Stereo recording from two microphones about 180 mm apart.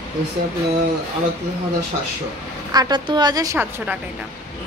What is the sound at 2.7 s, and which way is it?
A woman's voice, 20° right (ahead or behind).